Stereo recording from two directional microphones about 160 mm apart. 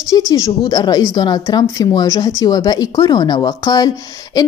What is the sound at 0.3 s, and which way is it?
Speech, 25° left (ahead or behind).